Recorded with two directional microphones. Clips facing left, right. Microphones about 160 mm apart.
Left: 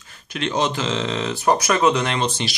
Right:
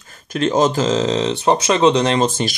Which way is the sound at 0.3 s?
45° right (ahead or behind).